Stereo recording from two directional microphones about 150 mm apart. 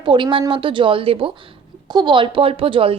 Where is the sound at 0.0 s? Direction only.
35° right (ahead or behind).